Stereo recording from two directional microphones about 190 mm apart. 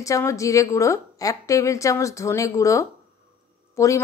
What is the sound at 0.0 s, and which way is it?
Speech, 15° left (ahead or behind).